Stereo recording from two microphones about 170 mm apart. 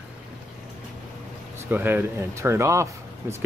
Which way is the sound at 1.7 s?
10° right (ahead or behind).